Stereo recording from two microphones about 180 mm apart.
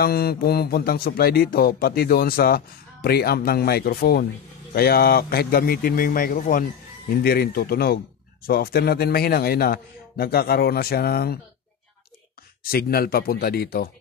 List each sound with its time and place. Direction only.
0.0 s a man's voice: 60° left (ahead or behind)
12.6 s speech: 55° left (ahead or behind)